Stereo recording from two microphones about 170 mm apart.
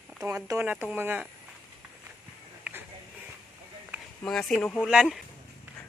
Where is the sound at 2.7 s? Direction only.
10° right (ahead or behind).